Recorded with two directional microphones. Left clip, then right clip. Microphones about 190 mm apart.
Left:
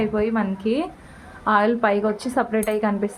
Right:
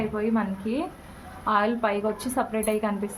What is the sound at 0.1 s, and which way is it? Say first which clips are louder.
A woman's voice: left 4 dB; 35° left (ahead or behind).